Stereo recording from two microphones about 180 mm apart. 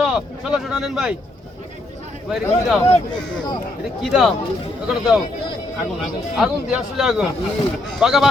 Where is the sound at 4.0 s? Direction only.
Centre (ahead or behind).